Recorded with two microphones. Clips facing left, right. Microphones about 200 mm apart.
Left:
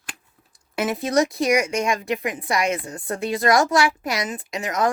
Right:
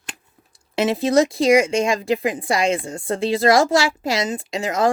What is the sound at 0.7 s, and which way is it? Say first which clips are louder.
Speech: right 4 dB; 25° right (ahead or behind).